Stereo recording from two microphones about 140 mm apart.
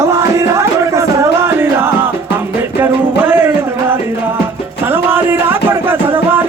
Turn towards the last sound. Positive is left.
turn(degrees=-15)  # may be behind; listen again after turning